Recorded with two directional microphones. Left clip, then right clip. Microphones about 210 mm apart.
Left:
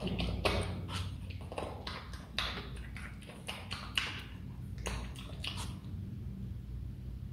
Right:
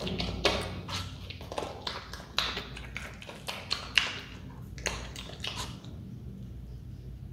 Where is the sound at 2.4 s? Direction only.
20° right (ahead or behind).